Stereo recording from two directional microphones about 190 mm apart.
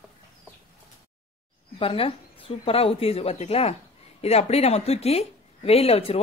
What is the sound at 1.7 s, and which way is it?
Speech, 30° left (ahead or behind).